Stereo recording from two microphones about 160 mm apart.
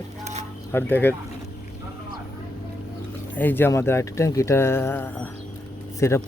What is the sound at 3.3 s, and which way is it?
Speech, 10° left (ahead or behind).